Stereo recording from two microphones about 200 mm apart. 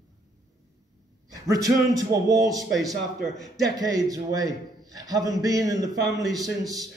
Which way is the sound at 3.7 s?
15° right (ahead or behind).